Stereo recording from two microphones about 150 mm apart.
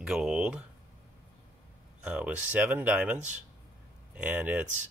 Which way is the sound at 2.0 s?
10° right (ahead or behind).